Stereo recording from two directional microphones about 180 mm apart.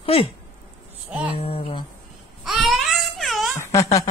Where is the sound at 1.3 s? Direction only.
35° left (ahead or behind).